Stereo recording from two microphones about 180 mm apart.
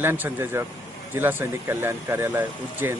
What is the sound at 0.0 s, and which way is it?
Speech, 10° right (ahead or behind).